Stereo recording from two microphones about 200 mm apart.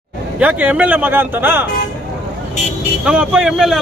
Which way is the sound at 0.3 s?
5° right (ahead or behind).